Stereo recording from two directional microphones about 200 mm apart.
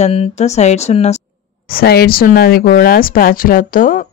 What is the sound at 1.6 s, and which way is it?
Speech, 50° left (ahead or behind).